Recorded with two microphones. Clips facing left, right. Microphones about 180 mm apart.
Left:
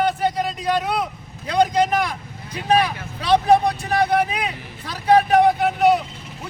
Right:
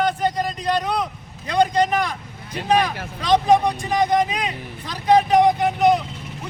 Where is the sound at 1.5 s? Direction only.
10° left (ahead or behind).